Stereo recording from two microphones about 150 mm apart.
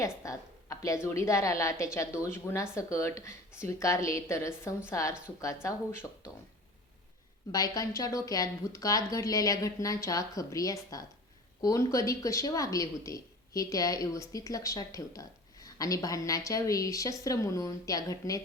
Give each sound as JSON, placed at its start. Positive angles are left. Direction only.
{"t": 0.0, "sound": "a sound", "side_deg": 20}
{"t": 1.0, "sound": "speech", "side_deg": 20}
{"t": 7.5, "sound": "speech", "side_deg": 25}